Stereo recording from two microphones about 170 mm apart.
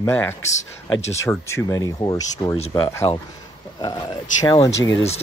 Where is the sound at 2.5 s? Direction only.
35° left (ahead or behind).